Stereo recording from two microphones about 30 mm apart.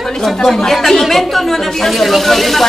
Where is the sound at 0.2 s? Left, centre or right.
Centre.